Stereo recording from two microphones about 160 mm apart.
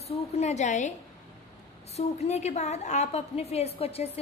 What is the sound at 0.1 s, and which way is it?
Speech, 45° left (ahead or behind).